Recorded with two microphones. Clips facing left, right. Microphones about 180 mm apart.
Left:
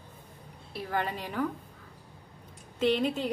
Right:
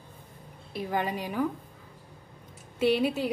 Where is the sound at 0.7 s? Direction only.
15° right (ahead or behind).